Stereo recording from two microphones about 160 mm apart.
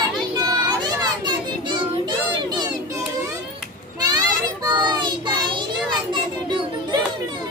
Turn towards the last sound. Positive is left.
turn(degrees=-30)  # may be behind; listen again after turning